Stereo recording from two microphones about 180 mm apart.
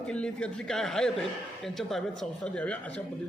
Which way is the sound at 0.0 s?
5° left (ahead or behind).